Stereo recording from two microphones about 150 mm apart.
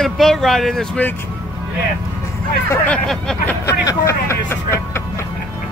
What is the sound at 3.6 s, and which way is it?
Speech, 20° left (ahead or behind).